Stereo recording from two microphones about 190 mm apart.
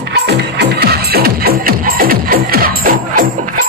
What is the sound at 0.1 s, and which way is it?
Music, 60° right (ahead or behind).